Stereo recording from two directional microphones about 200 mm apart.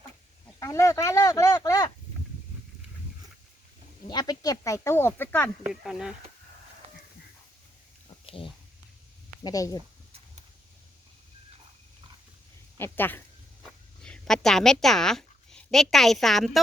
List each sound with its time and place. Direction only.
0.6 s speech: 15° left (ahead or behind)
4.0 s speech: 20° left (ahead or behind)
5.6 s speech: 5° right (ahead or behind)
8.0 s a sound: 25° left (ahead or behind)
9.4 s speech: 15° left (ahead or behind)
12.7 s speech: 10° left (ahead or behind)
13.6 s a sound: 5° left (ahead or behind)